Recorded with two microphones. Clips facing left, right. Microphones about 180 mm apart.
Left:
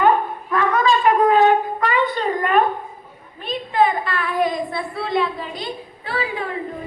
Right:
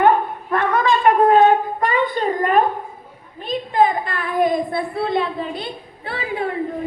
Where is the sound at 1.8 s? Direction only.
50° right (ahead or behind).